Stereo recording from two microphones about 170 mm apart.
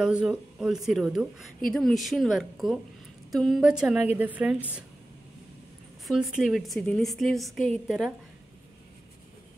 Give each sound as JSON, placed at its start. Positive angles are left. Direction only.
{"t": 0.0, "sound": "a woman's voice", "side_deg": -5}
{"t": 6.0, "sound": "a woman's voice", "side_deg": 0}